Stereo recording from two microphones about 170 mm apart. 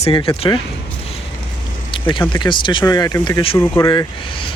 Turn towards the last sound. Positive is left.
turn(degrees=30)  # may be behind; listen again after turning